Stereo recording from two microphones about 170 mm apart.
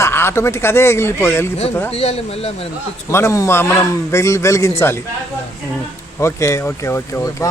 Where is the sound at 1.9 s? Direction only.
40° left (ahead or behind).